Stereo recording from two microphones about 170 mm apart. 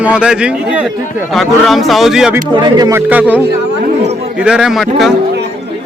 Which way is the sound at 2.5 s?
25° right (ahead or behind).